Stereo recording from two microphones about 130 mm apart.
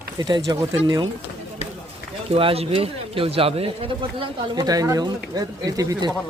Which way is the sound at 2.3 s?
50° right (ahead or behind).